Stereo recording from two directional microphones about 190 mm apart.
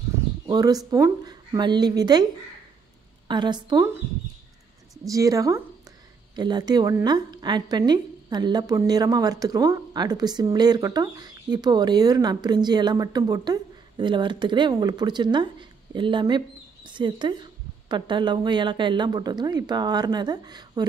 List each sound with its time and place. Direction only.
0.5 s a woman's voice: 20° right (ahead or behind)
3.3 s a woman's voice: 25° right (ahead or behind)
5.0 s a woman's voice: 15° right (ahead or behind)